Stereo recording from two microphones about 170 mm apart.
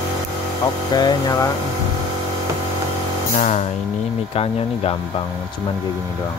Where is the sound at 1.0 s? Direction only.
20° left (ahead or behind).